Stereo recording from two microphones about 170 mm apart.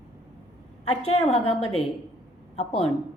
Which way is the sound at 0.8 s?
40° left (ahead or behind).